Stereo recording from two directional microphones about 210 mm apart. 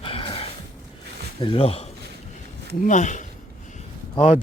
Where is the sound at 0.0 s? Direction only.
25° left (ahead or behind).